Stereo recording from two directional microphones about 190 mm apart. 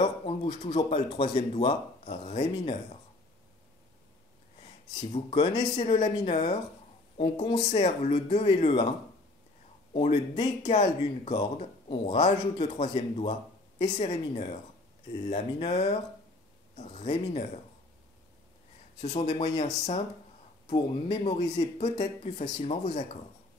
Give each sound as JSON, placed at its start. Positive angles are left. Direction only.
{"t": 0.0, "sound": "speech", "side_deg": 30}
{"t": 5.3, "sound": "speech", "side_deg": 25}
{"t": 9.9, "sound": "speech", "side_deg": 35}
{"t": 10.3, "sound": "speech", "side_deg": 20}
{"t": 10.7, "sound": "speech", "side_deg": 35}
{"t": 19.0, "sound": "speech", "side_deg": 30}